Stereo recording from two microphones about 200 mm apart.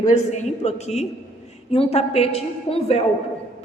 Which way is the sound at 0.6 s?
35° left (ahead or behind).